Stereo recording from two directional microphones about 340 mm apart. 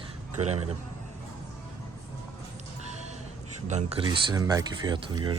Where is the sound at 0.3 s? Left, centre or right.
Centre.